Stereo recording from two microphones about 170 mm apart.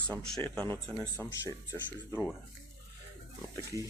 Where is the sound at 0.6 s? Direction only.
10° left (ahead or behind).